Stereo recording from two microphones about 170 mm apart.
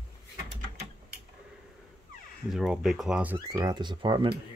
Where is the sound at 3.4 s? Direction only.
20° right (ahead or behind).